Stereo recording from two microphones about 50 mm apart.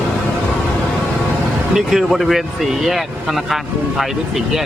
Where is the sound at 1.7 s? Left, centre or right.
Centre.